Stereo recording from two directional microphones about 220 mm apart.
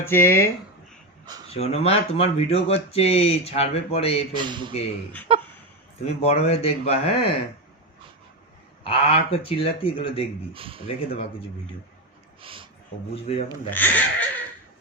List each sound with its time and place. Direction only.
0.1 s speech: 10° left (ahead or behind)
1.5 s speech: 30° left (ahead or behind)
4.4 s a man's voice: 20° right (ahead or behind)
6.1 s speech: 30° left (ahead or behind)
8.8 s speech: 25° left (ahead or behind)
10.5 s a man's voice: 25° right (ahead or behind)
10.8 s speech: 30° left (ahead or behind)
12.4 s speech: 25° right (ahead or behind)
13.1 s speech: 25° left (ahead or behind)
13.7 s speech: 10° left (ahead or behind)